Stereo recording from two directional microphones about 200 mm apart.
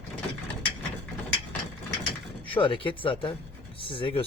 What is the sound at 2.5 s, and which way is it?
Speech, 25° left (ahead or behind).